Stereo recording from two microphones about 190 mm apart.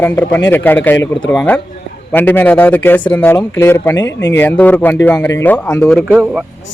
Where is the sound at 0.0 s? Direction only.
10° left (ahead or behind).